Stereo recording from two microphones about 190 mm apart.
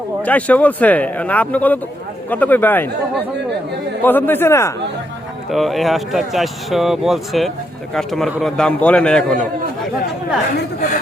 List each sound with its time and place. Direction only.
0.2 s speech: 5° left (ahead or behind)
4.0 s speech: 10° left (ahead or behind)
5.5 s speech: centre (ahead or behind)